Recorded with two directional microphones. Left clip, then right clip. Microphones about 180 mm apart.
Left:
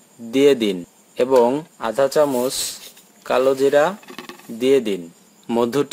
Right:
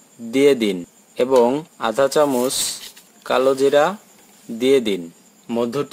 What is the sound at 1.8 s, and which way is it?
Speech, 10° right (ahead or behind).